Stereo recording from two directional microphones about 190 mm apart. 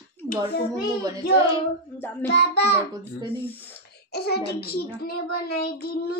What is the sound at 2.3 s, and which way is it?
Speech, 65° left (ahead or behind).